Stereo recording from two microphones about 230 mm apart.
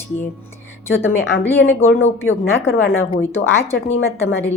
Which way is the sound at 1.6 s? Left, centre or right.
Left.